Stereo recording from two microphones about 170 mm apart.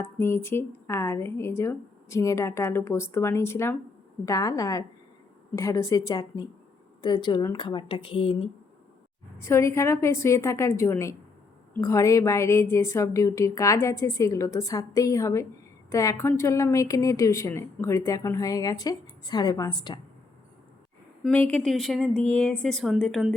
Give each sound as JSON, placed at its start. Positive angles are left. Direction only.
{"t": 0.0, "sound": "a woman's voice", "side_deg": 15}
{"t": 9.4, "sound": "a woman's voice", "side_deg": 15}
{"t": 21.5, "sound": "a woman's voice", "side_deg": 0}